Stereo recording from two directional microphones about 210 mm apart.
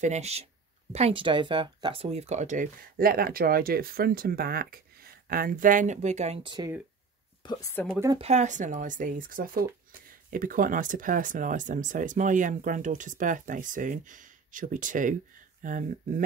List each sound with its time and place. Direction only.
0.0 s speech: 30° right (ahead or behind)
7.4 s a woman's voice: 15° left (ahead or behind)
8.2 s speech: 30° right (ahead or behind)